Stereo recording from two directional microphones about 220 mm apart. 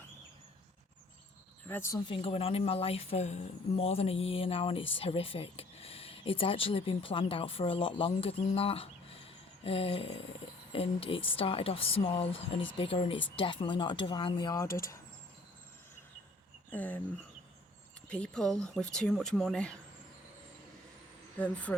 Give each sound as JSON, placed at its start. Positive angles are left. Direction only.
{"t": 1.6, "sound": "speech", "side_deg": 10}
{"t": 2.2, "sound": "speech", "side_deg": 25}
{"t": 16.7, "sound": "speech", "side_deg": 10}
{"t": 18.1, "sound": "speech", "side_deg": 5}
{"t": 21.3, "sound": "speech", "side_deg": 5}